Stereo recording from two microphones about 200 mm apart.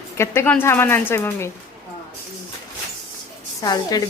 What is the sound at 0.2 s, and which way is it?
A woman's voice, 10° left (ahead or behind).